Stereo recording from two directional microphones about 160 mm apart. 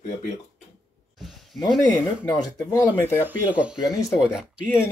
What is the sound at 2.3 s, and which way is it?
Speech, 25° left (ahead or behind).